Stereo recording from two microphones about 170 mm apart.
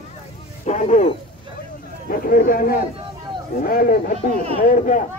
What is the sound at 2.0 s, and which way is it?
Chatter, 55° left (ahead or behind).